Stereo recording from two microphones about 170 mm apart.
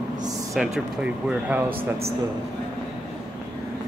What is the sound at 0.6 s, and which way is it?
Speech, 5° right (ahead or behind).